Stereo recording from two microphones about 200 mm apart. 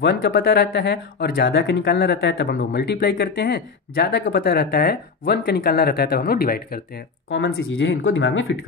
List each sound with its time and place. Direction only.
0.0 s speech: 50° left (ahead or behind)
7.2 s speech: 65° left (ahead or behind)